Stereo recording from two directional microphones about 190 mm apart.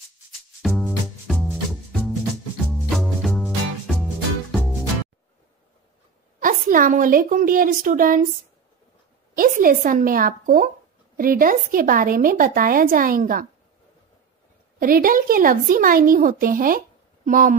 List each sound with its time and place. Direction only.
0.6 s music: centre (ahead or behind)
6.4 s speech: 45° right (ahead or behind)
9.3 s speech: 45° right (ahead or behind)
14.8 s speech: 45° right (ahead or behind)